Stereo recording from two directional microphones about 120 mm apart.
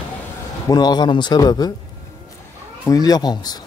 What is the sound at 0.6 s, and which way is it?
Speech, 35° left (ahead or behind).